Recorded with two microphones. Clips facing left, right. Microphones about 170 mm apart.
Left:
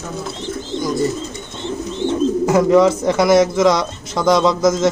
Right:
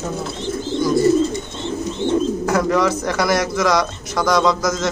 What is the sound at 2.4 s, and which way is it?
Speech, 20° left (ahead or behind).